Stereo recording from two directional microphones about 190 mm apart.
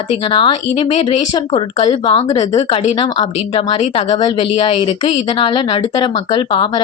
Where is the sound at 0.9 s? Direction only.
35° left (ahead or behind).